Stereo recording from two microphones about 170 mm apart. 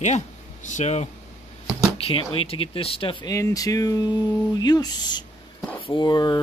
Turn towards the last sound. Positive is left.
turn(degrees=25)  # may be behind; listen again after turning